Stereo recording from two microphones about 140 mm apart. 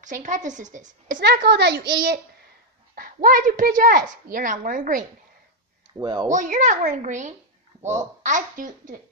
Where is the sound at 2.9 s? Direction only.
90° right; by 5.1 s 70° right (ahead or behind).